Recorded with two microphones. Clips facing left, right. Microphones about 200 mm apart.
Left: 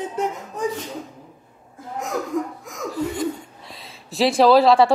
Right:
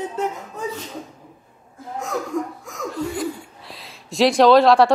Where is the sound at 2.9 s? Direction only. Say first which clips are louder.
Left 1 dB; centre (ahead or behind).